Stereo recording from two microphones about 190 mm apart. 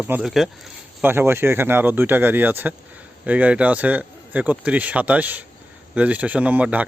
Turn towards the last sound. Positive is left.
turn(degrees=-10)  # may be behind; listen again after turning